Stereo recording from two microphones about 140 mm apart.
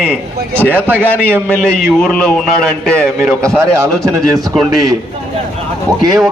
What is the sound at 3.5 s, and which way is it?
Speech, 20° right (ahead or behind).